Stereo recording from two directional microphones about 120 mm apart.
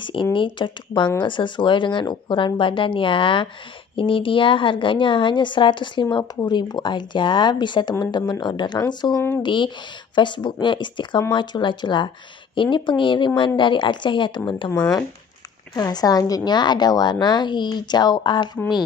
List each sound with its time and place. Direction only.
0.0 s a woman's voice: 45° left (ahead or behind)
15.7 s a woman's voice: 35° left (ahead or behind)